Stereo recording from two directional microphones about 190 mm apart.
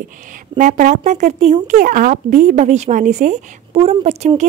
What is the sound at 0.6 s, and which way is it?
A woman's voice, 40° right (ahead or behind).